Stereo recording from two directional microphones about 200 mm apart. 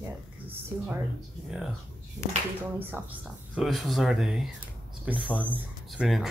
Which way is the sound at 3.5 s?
Centre (ahead or behind).